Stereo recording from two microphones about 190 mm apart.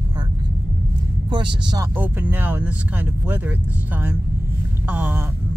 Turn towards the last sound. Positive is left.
turn(degrees=-10)  # may be behind; listen again after turning